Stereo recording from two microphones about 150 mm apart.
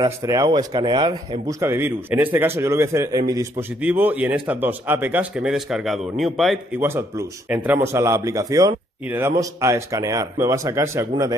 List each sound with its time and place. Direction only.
0.0 s speech: 20° right (ahead or behind)
1.6 s speech: 15° right (ahead or behind)
3.8 s speech: 10° right (ahead or behind)
6.8 s speech: 15° right (ahead or behind)